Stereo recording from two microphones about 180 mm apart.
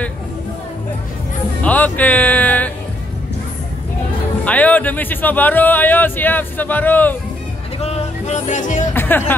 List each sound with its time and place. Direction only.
1.6 s music: 10° left (ahead or behind)
4.5 s speech: 10° left (ahead or behind)
7.8 s music: 40° left (ahead or behind)
8.9 s speech: 10° left (ahead or behind)